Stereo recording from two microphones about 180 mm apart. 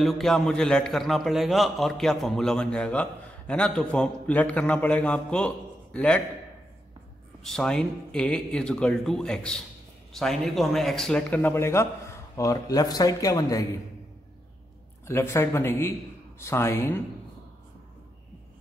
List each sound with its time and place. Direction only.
0.0 s a man's voice: centre (ahead or behind)
7.4 s a man's voice: 5° left (ahead or behind); by 13.7 s 20° left (ahead or behind)
15.0 s speech: 15° left (ahead or behind)